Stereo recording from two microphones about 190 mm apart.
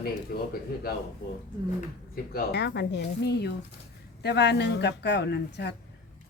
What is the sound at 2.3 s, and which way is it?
Speech, 65° left (ahead or behind).